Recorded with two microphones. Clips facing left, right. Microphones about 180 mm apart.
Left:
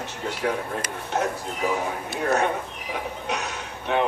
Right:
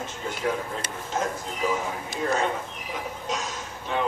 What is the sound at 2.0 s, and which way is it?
Speech, 60° left (ahead or behind).